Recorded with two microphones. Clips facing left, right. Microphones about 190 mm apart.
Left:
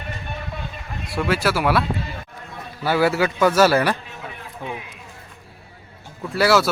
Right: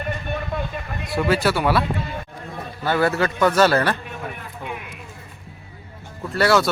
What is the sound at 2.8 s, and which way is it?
A man's voice, 10° left (ahead or behind).